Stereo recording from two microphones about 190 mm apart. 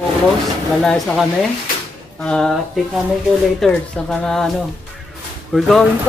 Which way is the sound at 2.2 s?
5° left (ahead or behind).